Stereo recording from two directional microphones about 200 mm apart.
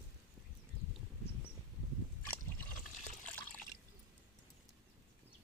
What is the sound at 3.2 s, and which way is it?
Water, 5° left (ahead or behind).